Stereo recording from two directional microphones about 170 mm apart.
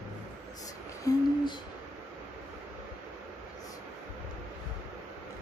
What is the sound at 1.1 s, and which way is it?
Speech, 20° left (ahead or behind).